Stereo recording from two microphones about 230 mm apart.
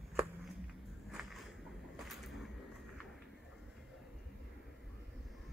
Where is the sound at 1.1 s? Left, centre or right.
Centre.